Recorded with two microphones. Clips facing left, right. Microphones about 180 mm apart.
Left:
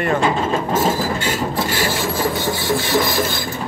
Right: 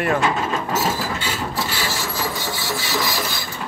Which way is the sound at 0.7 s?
50° left (ahead or behind).